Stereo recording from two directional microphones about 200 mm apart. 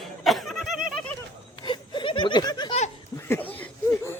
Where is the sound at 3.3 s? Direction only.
10° left (ahead or behind).